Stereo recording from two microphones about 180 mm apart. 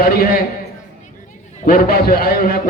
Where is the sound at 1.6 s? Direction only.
55° left (ahead or behind).